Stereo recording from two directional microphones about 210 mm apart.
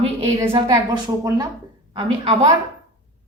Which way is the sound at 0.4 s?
20° right (ahead or behind).